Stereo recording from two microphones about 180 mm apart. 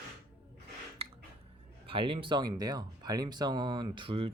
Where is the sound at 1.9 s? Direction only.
30° right (ahead or behind).